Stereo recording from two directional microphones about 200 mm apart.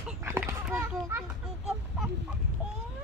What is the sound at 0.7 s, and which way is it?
Children playing, 10° right (ahead or behind).